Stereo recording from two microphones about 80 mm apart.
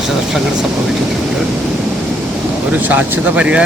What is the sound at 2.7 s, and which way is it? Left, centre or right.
Speech, right.